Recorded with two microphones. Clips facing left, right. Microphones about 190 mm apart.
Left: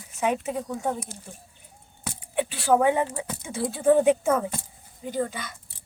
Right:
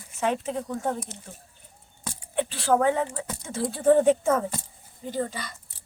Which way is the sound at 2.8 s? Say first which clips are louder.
Left 1 dB; 15° left (ahead or behind).